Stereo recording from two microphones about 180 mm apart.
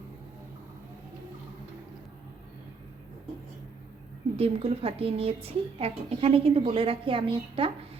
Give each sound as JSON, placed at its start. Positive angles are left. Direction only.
{"t": 4.4, "sound": "a woman's voice", "side_deg": -35}